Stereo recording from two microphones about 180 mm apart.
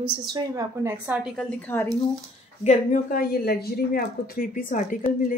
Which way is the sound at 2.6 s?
45° left (ahead or behind).